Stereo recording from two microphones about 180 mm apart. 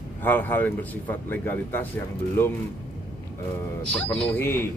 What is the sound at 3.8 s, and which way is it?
Speech, 5° left (ahead or behind).